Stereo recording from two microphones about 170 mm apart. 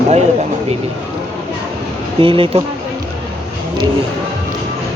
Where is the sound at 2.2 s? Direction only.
30° right (ahead or behind).